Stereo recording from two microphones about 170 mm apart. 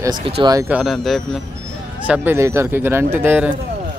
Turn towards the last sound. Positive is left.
turn(degrees=-10)  # may be behind; listen again after turning